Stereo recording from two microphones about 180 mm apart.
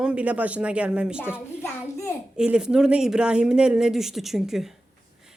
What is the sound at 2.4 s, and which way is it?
Speech, 5° right (ahead or behind).